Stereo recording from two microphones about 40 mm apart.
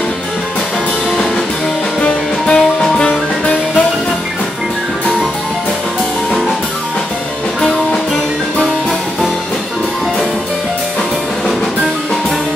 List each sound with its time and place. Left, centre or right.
2.4 s music: left